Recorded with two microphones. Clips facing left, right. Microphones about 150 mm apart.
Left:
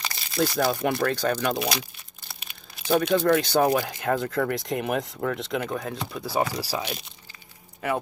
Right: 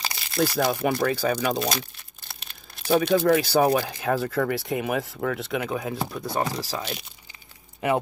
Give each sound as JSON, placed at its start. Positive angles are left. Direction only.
{"t": 0.3, "sound": "speech", "side_deg": 0}
{"t": 1.6, "sound": "crumpling", "side_deg": 5}
{"t": 3.2, "sound": "speech", "side_deg": -5}
{"t": 7.8, "sound": "speech", "side_deg": -20}